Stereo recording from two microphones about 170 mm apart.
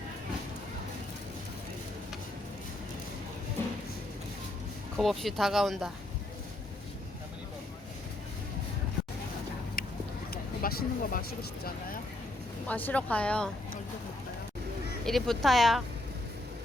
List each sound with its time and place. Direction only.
4.9 s speech: centre (ahead or behind)
10.3 s speech: 60° left (ahead or behind)
12.6 s speech: 10° left (ahead or behind)
15.0 s speech: centre (ahead or behind)